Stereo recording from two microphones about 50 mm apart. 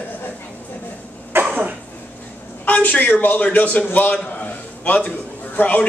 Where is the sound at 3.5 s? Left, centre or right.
Left.